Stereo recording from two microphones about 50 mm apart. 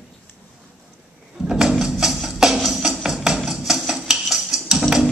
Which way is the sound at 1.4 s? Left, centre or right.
Centre.